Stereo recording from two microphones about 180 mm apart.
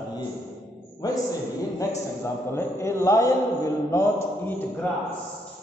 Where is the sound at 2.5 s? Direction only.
15° left (ahead or behind).